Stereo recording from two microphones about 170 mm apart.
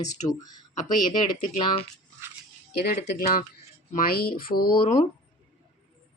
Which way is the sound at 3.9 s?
60° left (ahead or behind).